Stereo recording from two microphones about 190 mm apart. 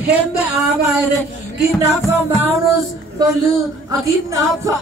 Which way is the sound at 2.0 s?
Centre (ahead or behind).